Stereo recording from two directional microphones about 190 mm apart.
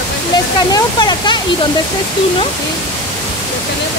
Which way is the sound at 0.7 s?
20° left (ahead or behind).